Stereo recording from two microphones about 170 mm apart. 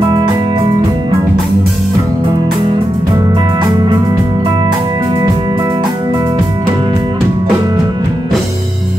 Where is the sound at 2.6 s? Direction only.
25° right (ahead or behind).